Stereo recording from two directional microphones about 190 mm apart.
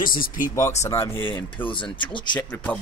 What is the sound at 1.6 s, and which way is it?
Speech, 25° left (ahead or behind).